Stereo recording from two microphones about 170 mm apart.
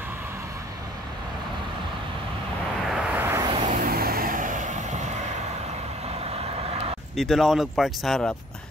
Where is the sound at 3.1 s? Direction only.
15° right (ahead or behind).